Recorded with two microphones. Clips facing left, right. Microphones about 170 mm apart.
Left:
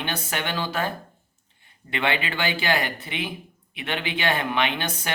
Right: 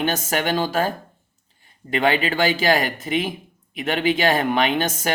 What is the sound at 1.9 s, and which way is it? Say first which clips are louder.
Speech: right 6 dB; 40° right (ahead or behind).